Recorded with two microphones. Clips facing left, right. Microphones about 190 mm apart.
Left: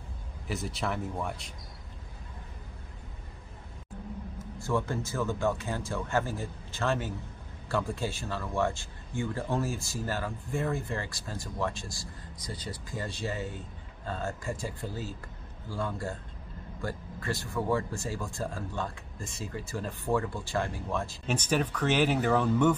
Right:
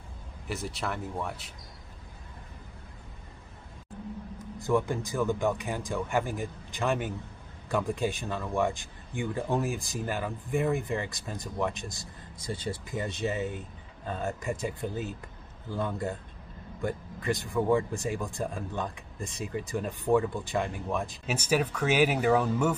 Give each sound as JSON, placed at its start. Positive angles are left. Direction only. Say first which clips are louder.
{"t": 0.5, "sound": "speech", "louder": "left 1 dB", "side_deg": 0}
{"t": 4.4, "sound": "a man's voice", "louder": "right 4 dB", "side_deg": -15}